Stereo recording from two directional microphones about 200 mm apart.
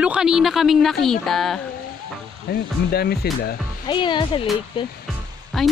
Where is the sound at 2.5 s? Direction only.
50° left (ahead or behind).